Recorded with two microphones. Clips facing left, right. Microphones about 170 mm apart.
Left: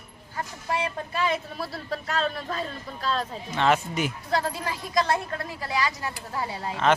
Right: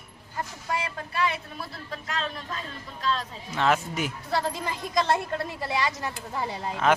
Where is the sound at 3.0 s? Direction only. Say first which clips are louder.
Left 1 dB; 40° left (ahead or behind).